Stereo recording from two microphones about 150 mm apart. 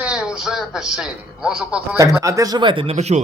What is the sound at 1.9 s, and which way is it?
Speech, 20° right (ahead or behind).